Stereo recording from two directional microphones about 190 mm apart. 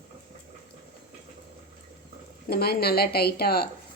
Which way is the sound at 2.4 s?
55° left (ahead or behind).